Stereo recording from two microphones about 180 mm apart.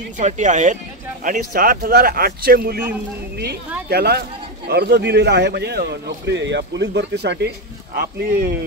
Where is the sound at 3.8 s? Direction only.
65° right (ahead or behind).